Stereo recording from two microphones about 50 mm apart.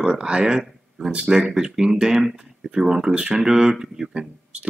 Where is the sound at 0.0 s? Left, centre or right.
Centre.